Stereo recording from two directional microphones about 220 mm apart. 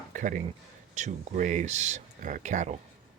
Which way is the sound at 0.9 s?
35° right (ahead or behind).